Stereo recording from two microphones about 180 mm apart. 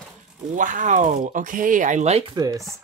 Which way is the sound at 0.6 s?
45° right (ahead or behind).